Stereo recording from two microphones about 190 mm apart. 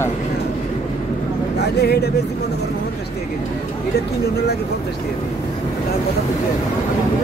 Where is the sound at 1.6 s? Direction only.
60° left (ahead or behind).